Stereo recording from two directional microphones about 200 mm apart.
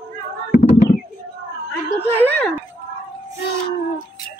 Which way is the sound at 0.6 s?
30° left (ahead or behind).